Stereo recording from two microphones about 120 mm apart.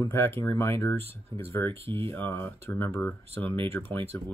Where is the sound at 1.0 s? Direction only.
55° right (ahead or behind).